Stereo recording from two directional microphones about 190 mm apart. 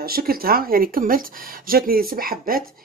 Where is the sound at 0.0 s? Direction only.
50° right (ahead or behind).